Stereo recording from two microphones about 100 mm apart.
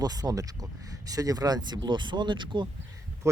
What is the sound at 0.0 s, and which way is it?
Speech, 40° right (ahead or behind).